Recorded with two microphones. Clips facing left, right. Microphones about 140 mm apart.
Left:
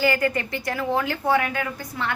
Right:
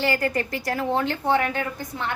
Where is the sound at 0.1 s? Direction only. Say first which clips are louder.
Left 1 dB; 35° right (ahead or behind).